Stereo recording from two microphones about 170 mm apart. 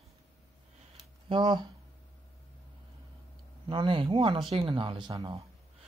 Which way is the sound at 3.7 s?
30° right (ahead or behind).